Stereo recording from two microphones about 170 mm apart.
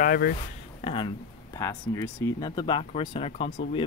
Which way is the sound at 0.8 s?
30° left (ahead or behind).